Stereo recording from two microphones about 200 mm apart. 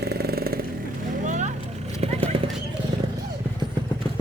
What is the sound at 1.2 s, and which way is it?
Vehicle, 35° right (ahead or behind).